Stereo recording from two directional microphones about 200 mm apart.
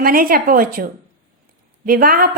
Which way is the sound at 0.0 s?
45° right (ahead or behind).